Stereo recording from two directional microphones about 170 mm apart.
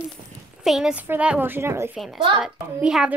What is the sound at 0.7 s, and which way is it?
A woman's voice, 5° right (ahead or behind).